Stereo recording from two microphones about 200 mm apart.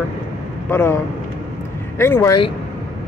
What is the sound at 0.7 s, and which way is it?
Speech, 10° left (ahead or behind).